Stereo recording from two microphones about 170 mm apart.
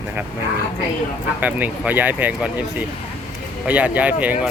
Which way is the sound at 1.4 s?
10° right (ahead or behind).